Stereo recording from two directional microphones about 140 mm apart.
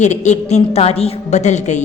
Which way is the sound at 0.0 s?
55° left (ahead or behind).